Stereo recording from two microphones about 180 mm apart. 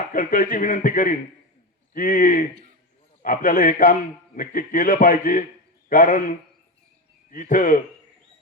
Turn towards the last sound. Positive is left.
turn(degrees=50)  # may be behind; listen again after turning